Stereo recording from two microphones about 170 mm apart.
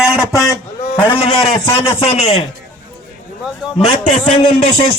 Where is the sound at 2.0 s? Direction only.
40° left (ahead or behind).